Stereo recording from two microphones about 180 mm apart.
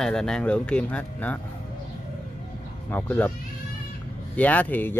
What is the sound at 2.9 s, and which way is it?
Speech, 10° left (ahead or behind).